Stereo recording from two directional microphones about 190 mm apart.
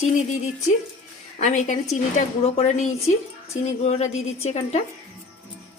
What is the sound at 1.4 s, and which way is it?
A woman's voice, 40° left (ahead or behind).